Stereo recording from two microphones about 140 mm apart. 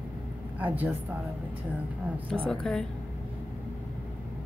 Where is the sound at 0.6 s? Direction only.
10° right (ahead or behind).